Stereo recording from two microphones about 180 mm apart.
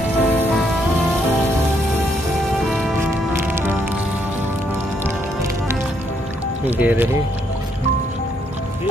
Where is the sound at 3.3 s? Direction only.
10° right (ahead or behind).